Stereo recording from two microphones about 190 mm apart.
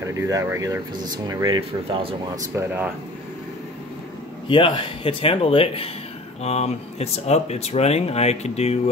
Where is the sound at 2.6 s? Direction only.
10° right (ahead or behind).